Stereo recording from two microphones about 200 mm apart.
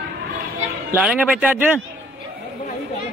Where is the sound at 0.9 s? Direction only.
5° right (ahead or behind).